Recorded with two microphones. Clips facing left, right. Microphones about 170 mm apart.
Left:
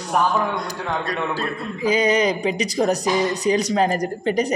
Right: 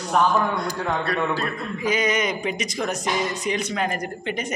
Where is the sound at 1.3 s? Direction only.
30° left (ahead or behind).